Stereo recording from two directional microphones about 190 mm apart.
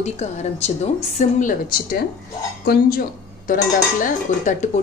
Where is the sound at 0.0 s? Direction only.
35° left (ahead or behind).